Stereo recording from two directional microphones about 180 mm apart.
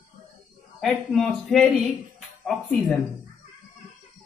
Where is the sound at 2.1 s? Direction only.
5° left (ahead or behind).